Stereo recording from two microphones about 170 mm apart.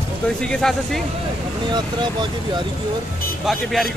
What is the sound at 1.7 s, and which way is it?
Speech, 25° right (ahead or behind).